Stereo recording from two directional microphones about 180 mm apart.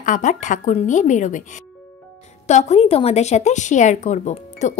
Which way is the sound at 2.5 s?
40° left (ahead or behind).